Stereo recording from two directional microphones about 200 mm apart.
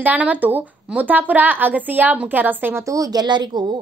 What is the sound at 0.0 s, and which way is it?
A woman's voice, 10° right (ahead or behind).